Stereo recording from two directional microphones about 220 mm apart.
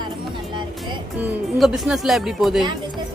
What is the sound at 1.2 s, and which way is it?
Speech, 5° right (ahead or behind).